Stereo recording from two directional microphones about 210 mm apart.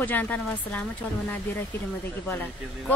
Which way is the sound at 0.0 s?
10° left (ahead or behind).